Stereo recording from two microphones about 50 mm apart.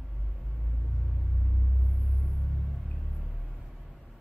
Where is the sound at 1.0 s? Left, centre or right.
Centre.